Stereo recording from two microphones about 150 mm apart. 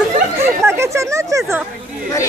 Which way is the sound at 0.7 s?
20° right (ahead or behind).